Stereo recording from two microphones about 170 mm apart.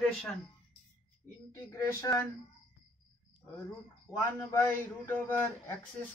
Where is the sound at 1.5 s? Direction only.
20° left (ahead or behind).